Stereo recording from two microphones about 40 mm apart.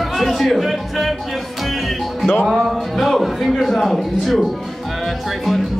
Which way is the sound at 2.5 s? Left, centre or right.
Centre.